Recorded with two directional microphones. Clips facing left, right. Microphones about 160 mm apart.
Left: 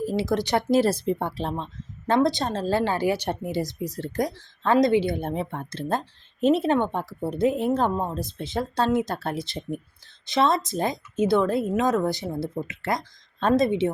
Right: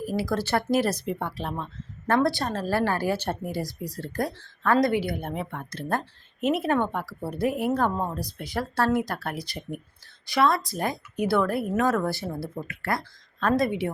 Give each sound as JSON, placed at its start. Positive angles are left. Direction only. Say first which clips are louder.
{"t": 0.0, "sound": "speech", "louder": "left 3 dB", "side_deg": 25}